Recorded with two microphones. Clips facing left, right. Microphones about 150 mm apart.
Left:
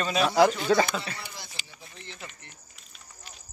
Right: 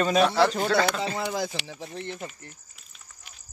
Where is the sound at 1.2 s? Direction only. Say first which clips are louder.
Right 15 dB; 90° right.